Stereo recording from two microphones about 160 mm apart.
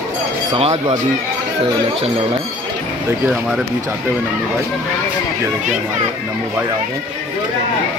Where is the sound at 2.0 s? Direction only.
35° right (ahead or behind).